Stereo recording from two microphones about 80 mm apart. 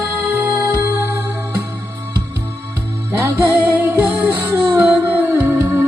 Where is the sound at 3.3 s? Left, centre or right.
Right.